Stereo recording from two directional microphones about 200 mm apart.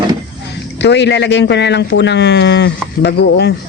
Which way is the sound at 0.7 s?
60° left (ahead or behind).